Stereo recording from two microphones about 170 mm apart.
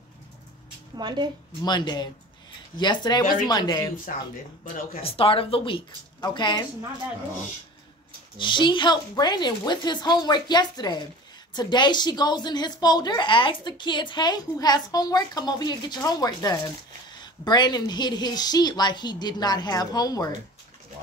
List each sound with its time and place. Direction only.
0.9 s a woman's voice: 25° right (ahead or behind)
1.6 s a woman's voice: 25° left (ahead or behind)
5.0 s a woman's voice: 35° left (ahead or behind)
8.4 s a woman's voice: 30° left (ahead or behind)